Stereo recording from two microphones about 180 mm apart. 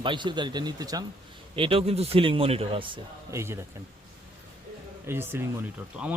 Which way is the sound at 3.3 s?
15° right (ahead or behind).